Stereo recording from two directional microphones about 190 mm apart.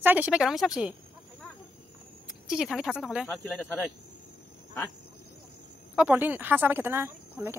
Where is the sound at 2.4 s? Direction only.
Centre (ahead or behind).